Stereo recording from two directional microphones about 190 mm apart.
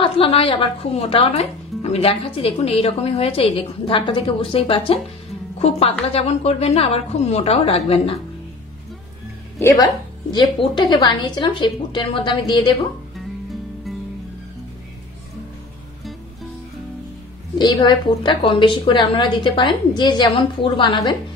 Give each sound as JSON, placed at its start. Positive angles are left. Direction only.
{"t": 0.0, "sound": "a woman's voice", "side_deg": 30}
{"t": 9.6, "sound": "speech", "side_deg": 15}
{"t": 10.3, "sound": "speech", "side_deg": 25}
{"t": 17.6, "sound": "speech", "side_deg": 25}